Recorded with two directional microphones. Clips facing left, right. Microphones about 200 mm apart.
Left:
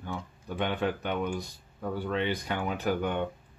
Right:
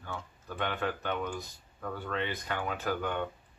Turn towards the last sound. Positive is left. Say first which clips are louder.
# left 4 dB
turn(degrees=15)  # may be behind; listen again after turning